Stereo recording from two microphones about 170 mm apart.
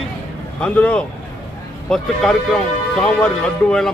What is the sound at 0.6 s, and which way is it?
A man's voice, 10° left (ahead or behind).